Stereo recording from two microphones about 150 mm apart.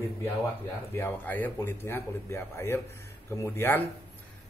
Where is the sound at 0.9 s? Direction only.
15° left (ahead or behind).